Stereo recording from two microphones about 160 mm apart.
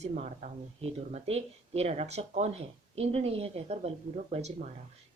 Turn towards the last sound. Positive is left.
turn(degrees=-45)  # may be behind; listen again after turning